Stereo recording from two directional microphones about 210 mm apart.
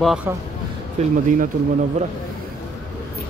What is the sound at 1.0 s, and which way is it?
Speech, 30° right (ahead or behind).